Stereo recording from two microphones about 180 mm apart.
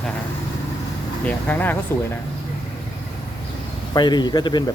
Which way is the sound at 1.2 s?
10° left (ahead or behind).